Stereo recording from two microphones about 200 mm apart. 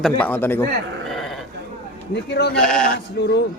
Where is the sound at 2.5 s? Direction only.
5° left (ahead or behind).